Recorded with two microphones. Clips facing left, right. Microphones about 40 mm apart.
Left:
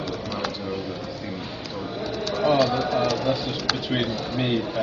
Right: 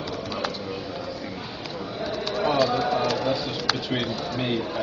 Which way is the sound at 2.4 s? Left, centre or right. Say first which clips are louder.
Left 2 dB; centre.